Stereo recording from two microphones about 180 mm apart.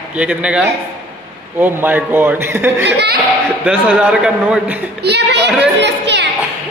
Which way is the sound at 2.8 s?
70° right (ahead or behind).